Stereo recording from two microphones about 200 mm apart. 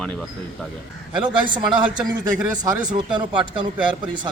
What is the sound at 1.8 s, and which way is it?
Speech, 20° right (ahead or behind).